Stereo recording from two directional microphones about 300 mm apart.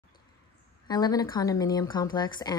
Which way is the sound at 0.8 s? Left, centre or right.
Centre.